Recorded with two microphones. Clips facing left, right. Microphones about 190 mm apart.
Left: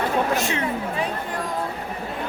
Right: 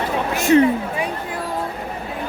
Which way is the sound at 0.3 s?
45° right (ahead or behind).